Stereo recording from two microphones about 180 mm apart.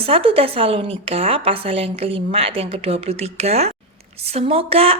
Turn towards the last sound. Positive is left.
turn(degrees=-30)  # may be behind; listen again after turning